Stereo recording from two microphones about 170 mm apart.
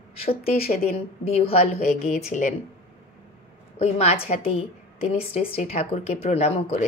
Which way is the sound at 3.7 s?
40° left (ahead or behind).